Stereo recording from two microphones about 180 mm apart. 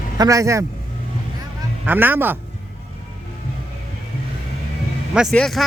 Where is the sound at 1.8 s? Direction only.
10° right (ahead or behind).